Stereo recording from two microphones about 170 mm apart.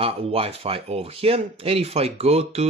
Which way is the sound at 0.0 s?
35° right (ahead or behind).